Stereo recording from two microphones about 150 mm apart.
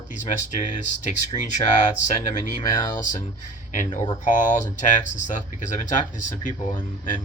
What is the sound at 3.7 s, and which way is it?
Speech, 60° left (ahead or behind).